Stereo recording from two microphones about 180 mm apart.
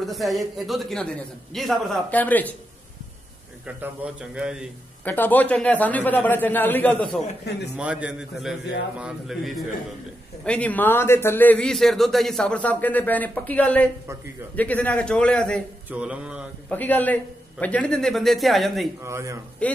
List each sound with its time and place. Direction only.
0.0 s a man's voice: centre (ahead or behind)
3.6 s a man's voice: 5° right (ahead or behind)
5.0 s a man's voice: 10° left (ahead or behind)
7.7 s a man's voice: 5° right (ahead or behind)
15.9 s mantra: 5° right (ahead or behind)
16.6 s a man's voice: 10° left (ahead or behind)
19.0 s mantra: 15° right (ahead or behind)
19.6 s speech: 5° left (ahead or behind)